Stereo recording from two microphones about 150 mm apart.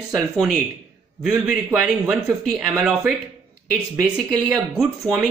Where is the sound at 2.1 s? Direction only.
Centre (ahead or behind).